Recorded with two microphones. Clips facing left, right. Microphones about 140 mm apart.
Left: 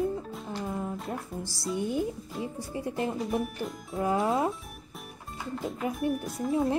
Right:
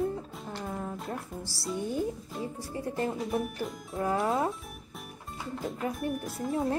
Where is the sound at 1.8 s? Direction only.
15° left (ahead or behind).